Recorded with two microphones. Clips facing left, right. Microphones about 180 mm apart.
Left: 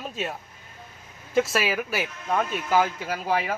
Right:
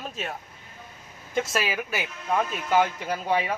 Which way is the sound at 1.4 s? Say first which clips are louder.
Left 4 dB; 5° left (ahead or behind).